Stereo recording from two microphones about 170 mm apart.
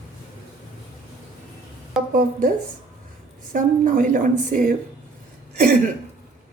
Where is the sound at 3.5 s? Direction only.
50° right (ahead or behind).